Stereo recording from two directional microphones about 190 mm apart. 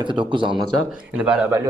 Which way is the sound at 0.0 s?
25° right (ahead or behind).